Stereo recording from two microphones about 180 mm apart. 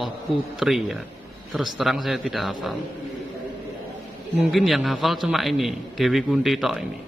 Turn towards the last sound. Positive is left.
turn(degrees=0)  # may be behind; listen again after turning